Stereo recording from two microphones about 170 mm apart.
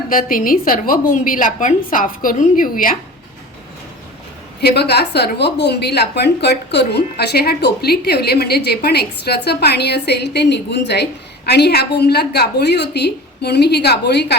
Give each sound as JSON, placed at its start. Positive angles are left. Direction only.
{"t": 0.1, "sound": "a woman's voice", "side_deg": 55}
{"t": 4.6, "sound": "a woman's voice", "side_deg": 75}